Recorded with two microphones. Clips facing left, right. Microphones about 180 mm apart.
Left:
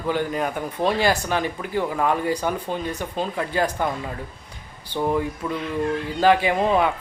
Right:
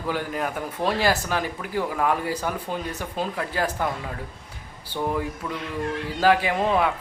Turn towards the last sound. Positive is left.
turn(degrees=0)  # may be behind; listen again after turning